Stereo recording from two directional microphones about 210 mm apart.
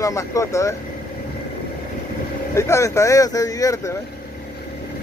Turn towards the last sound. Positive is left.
turn(degrees=15)  # may be behind; listen again after turning